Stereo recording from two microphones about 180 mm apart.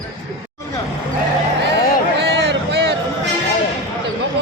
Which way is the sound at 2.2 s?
70° right (ahead or behind).